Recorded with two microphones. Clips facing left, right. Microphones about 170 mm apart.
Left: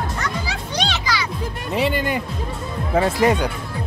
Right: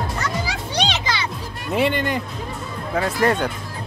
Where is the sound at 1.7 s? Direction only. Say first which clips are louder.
Right 1 dB; 5° left (ahead or behind).